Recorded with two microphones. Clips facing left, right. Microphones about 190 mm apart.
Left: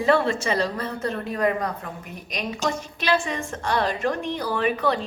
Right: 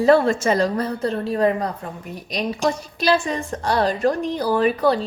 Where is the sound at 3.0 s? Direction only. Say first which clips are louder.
Right 4 dB; 35° right (ahead or behind).